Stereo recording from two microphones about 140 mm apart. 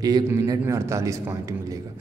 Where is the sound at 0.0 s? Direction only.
25° right (ahead or behind).